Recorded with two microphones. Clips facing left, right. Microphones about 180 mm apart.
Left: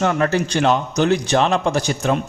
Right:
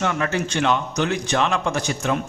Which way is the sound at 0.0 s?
40° left (ahead or behind).